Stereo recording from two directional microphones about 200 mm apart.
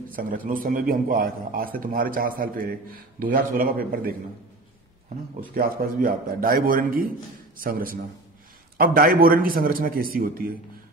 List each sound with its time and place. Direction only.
0.1 s a man's voice: 45° right (ahead or behind)
5.5 s a man's voice: 45° right (ahead or behind)